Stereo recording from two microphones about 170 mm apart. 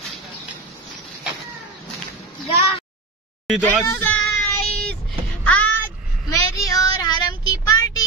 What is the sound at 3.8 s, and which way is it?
Speech, 10° left (ahead or behind).